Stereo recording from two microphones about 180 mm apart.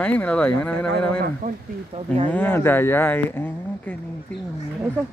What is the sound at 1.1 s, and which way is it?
Speech, 55° right (ahead or behind).